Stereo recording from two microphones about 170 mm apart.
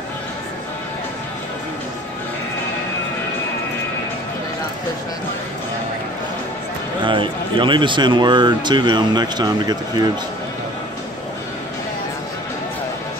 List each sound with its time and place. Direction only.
7.1 s speech: 30° right (ahead or behind)